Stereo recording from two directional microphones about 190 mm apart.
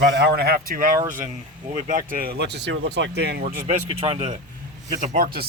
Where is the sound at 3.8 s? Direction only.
30° right (ahead or behind).